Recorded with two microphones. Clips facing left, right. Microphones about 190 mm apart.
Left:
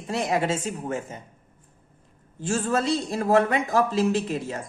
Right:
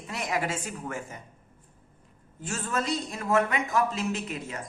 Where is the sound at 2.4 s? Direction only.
30° left (ahead or behind).